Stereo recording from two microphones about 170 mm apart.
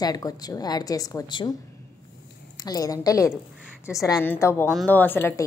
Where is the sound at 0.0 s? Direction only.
20° left (ahead or behind).